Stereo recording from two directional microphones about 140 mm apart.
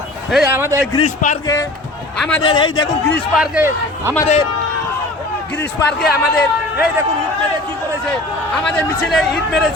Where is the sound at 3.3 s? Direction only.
5° right (ahead or behind).